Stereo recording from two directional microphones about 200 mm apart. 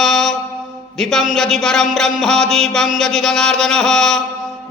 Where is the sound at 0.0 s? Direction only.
Centre (ahead or behind).